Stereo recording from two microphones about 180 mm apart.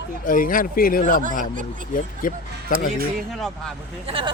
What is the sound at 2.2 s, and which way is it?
Speech, 50° left (ahead or behind).